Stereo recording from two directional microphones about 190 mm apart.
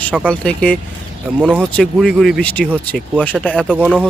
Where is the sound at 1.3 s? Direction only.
10° right (ahead or behind).